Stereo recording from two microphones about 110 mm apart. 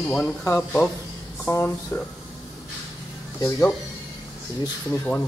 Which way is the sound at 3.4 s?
25° left (ahead or behind).